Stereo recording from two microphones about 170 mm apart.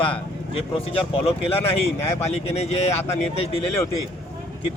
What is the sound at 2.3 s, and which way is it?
A man's voice, 40° left (ahead or behind).